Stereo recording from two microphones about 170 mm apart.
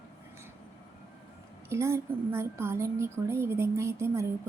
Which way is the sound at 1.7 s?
15° right (ahead or behind).